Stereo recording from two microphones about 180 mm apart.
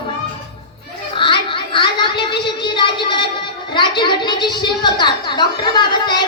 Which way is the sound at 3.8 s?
25° left (ahead or behind).